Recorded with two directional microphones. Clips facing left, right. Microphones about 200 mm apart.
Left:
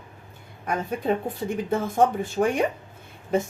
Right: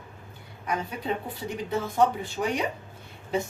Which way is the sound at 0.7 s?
50° left (ahead or behind).